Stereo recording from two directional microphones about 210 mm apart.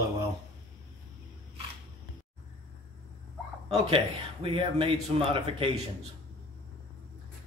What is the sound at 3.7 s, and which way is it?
Speech, 25° right (ahead or behind).